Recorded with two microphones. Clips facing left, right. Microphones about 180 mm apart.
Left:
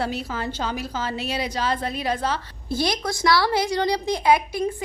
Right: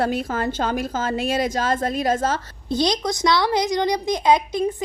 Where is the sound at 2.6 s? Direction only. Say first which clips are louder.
Right 3 dB; 20° right (ahead or behind).